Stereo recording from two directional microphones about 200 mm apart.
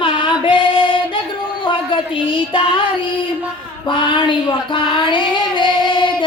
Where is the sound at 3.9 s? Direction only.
25° left (ahead or behind).